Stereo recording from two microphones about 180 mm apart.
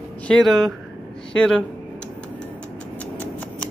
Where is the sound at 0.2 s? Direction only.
5° left (ahead or behind).